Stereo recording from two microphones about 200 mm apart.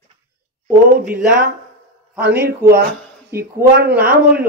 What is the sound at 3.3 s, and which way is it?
Speech, 10° right (ahead or behind).